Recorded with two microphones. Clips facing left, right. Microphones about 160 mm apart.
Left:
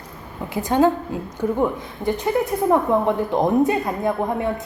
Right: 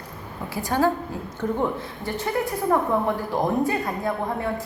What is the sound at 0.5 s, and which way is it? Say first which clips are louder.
A woman's voice: left 5 dB; 20° left (ahead or behind).